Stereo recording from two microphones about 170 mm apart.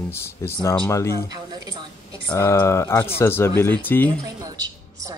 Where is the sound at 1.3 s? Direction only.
25° right (ahead or behind).